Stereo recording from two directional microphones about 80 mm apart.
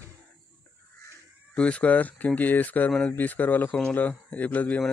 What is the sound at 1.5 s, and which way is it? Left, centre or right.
Speech, centre.